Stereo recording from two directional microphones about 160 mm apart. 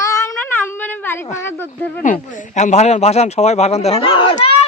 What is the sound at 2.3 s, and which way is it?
Speech, 50° left (ahead or behind).